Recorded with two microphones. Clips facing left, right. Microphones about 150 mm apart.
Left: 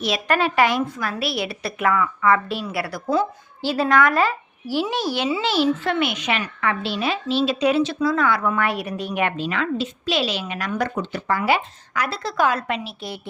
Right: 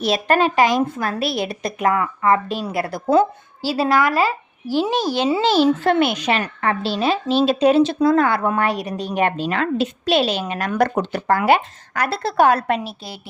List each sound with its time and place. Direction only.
0.1 s a child's voice: 40° right (ahead or behind)
0.9 s a woman's voice: 50° right (ahead or behind)
4.0 s speech: 10° right (ahead or behind)
4.8 s a child's voice: 40° right (ahead or behind)
8.4 s a child's voice: 40° right (ahead or behind)
9.7 s a woman's voice: 60° right (ahead or behind)
10.7 s speech: 70° right (ahead or behind); by 12.9 s 50° right (ahead or behind)